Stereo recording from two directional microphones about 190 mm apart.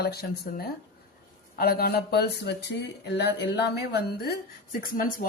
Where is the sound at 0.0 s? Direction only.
55° left (ahead or behind).